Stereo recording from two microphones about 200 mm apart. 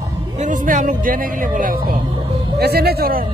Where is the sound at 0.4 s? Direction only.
40° right (ahead or behind).